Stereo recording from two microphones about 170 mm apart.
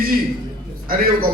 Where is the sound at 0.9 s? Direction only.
60° right (ahead or behind).